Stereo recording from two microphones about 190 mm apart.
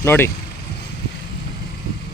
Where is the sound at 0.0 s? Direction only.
10° left (ahead or behind).